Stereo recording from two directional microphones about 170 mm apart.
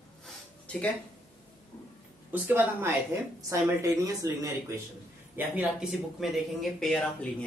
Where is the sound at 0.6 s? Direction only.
10° left (ahead or behind).